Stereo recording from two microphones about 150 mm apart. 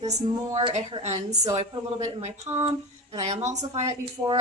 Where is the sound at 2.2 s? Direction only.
45° right (ahead or behind).